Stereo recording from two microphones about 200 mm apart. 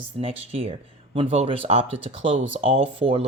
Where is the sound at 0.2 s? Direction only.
30° right (ahead or behind).